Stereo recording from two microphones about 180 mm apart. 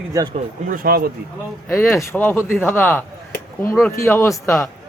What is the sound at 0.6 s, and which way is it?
Speech, 50° right (ahead or behind).